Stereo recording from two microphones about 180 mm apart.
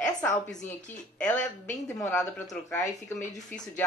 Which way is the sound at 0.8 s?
10° left (ahead or behind).